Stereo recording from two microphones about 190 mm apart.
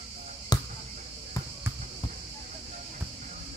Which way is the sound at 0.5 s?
20° left (ahead or behind).